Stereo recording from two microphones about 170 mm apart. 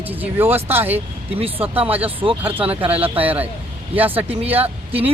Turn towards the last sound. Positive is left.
turn(degrees=-35)  # may be behind; listen again after turning